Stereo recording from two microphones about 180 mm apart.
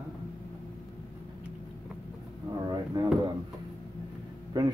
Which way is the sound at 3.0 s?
25° right (ahead or behind).